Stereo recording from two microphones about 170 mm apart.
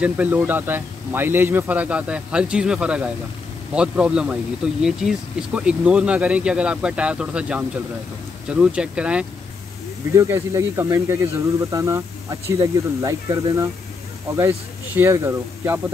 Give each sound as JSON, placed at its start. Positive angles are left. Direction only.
{"t": 0.0, "sound": "speech", "side_deg": -10}
{"t": 10.1, "sound": "speech", "side_deg": -15}